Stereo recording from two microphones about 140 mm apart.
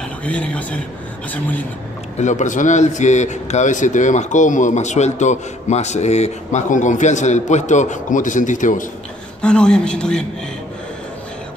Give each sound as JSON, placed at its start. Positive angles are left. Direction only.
{"t": 0.2, "sound": "speech", "side_deg": 10}
{"t": 2.1, "sound": "a man's voice", "side_deg": 60}
{"t": 9.4, "sound": "a man's voice", "side_deg": 5}